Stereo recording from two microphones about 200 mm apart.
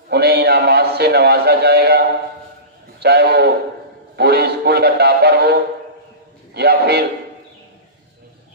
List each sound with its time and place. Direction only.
0.1 s a man's voice: 55° right (ahead or behind)